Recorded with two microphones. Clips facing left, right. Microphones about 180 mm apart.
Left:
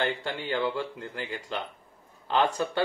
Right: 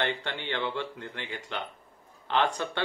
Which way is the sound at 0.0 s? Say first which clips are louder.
Left 2 dB; 5° left (ahead or behind).